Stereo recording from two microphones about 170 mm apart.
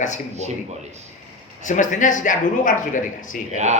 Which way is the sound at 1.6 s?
50° left (ahead or behind).